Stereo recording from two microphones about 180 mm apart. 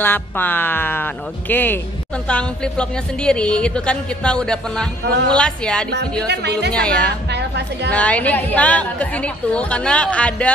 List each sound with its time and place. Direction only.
0.0 s a woman's voice: 10° left (ahead or behind)
6.2 s speech: 70° right (ahead or behind)
6.7 s a woman's voice: 5° left (ahead or behind)
7.2 s a woman's voice: 70° right (ahead or behind)
7.9 s a woman's voice: 5° left (ahead or behind)